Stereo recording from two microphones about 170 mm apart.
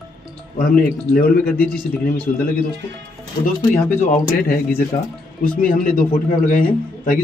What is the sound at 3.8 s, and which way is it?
A man's voice, 55° left (ahead or behind).